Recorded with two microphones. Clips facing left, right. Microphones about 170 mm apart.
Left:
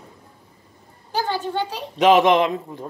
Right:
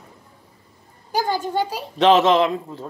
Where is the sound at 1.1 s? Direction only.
10° right (ahead or behind).